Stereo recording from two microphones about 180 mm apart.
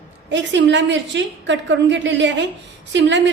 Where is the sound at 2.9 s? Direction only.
80° right.